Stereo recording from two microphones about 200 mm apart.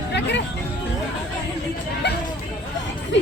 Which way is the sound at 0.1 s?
60° left (ahead or behind).